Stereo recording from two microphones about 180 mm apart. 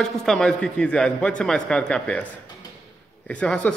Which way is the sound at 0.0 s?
5° left (ahead or behind).